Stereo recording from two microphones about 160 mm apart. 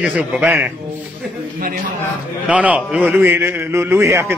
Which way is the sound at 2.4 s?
10° right (ahead or behind).